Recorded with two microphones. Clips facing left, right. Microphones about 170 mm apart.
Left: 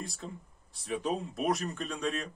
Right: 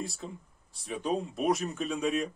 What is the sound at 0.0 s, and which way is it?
Speech, centre (ahead or behind).